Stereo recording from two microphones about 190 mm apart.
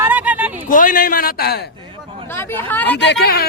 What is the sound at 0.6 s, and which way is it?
Speech, 45° left (ahead or behind).